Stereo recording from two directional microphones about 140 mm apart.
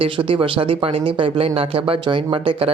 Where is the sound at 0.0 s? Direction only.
40° right (ahead or behind).